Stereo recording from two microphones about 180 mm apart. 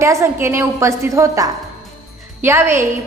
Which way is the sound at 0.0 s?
15° right (ahead or behind).